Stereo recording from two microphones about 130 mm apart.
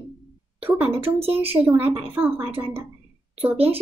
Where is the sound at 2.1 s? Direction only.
15° right (ahead or behind).